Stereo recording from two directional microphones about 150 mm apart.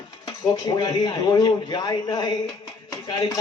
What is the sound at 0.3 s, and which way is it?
A man's voice, 25° left (ahead or behind).